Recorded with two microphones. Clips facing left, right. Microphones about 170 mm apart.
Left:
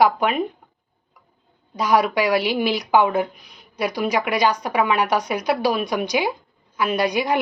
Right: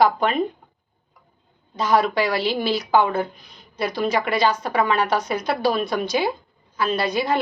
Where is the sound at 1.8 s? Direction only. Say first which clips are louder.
Left 1 dB; 15° left (ahead or behind).